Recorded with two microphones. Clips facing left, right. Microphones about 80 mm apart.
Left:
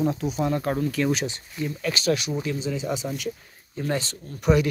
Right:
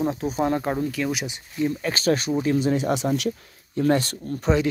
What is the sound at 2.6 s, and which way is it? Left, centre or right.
Speech, right.